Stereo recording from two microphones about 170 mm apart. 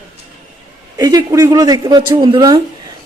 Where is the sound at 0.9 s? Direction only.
20° right (ahead or behind).